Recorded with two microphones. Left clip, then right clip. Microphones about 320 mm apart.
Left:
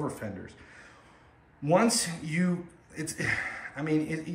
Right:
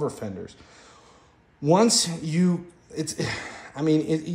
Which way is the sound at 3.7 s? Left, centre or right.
Centre.